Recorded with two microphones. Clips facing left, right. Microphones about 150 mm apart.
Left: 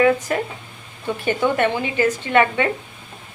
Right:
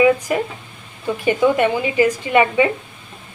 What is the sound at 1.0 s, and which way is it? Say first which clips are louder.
A woman's voice: right 4 dB; 10° right (ahead or behind).